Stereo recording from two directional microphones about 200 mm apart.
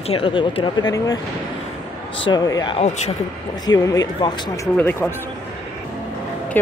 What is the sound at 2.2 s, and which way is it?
Speech, 20° left (ahead or behind).